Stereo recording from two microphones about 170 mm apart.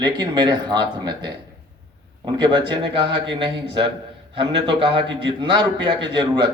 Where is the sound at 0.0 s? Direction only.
25° right (ahead or behind).